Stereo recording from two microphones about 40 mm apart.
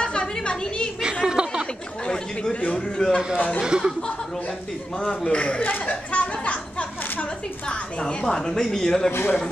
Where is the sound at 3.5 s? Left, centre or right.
Centre.